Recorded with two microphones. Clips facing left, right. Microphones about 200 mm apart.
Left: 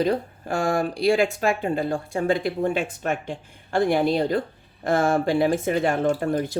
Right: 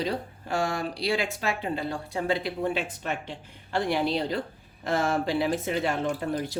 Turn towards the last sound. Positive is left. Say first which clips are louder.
# left 6 dB
turn(degrees=50)  # may be behind; listen again after turning